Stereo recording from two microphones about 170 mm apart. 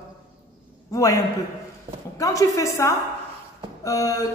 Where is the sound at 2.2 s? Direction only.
20° left (ahead or behind).